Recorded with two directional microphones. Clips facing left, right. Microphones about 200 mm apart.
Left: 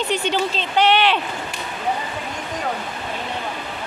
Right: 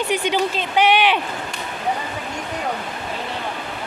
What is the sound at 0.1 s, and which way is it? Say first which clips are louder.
Speech: right 2 dB; 10° right (ahead or behind).